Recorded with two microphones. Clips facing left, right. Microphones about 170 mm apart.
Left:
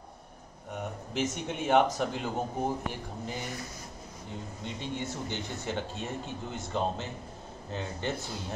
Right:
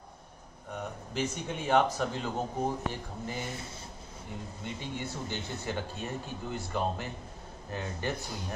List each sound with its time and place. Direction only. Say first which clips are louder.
1.2 s speech: left 2 dB; 15° left (ahead or behind)
4.7 s speech: left 3 dB; 20° left (ahead or behind)